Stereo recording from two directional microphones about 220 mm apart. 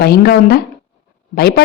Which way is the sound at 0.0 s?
45° left (ahead or behind).